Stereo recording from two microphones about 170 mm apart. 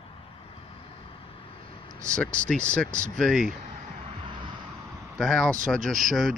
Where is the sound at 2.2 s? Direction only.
5° left (ahead or behind).